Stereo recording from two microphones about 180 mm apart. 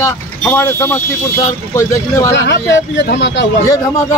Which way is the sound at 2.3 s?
75° left (ahead or behind).